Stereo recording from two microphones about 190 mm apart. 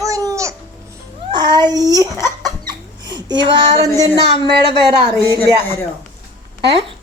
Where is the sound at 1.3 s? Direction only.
20° right (ahead or behind).